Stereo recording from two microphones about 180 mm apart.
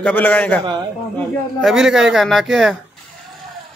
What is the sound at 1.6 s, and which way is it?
Speech, centre (ahead or behind).